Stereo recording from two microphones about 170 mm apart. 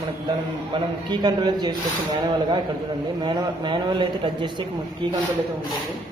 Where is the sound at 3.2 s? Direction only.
25° right (ahead or behind).